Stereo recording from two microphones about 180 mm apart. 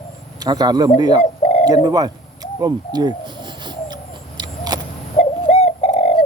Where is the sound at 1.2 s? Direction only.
35° left (ahead or behind).